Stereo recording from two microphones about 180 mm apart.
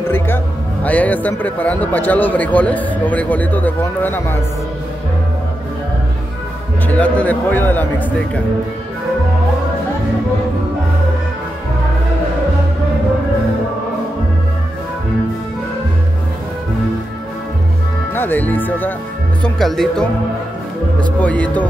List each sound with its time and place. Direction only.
0.8 s speech: 10° left (ahead or behind)
6.9 s speech: 10° left (ahead or behind)
18.1 s speech: 10° left (ahead or behind)